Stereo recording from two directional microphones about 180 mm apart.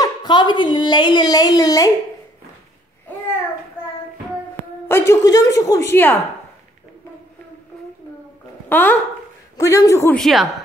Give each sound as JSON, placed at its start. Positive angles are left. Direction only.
{"t": 0.0, "sound": "a child's voice", "side_deg": 25}
{"t": 4.8, "sound": "a woman's voice", "side_deg": 15}
{"t": 8.6, "sound": "a woman's voice", "side_deg": 10}
{"t": 10.1, "sound": "a woman's voice", "side_deg": 0}